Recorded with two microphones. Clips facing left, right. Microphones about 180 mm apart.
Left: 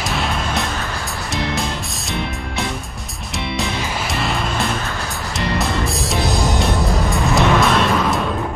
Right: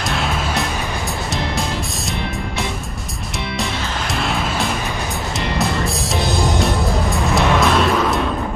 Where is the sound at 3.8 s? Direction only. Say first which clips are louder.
Left 1 dB; 10° left (ahead or behind).